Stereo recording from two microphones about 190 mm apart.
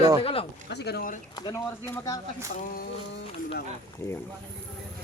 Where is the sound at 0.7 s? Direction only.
60° left (ahead or behind).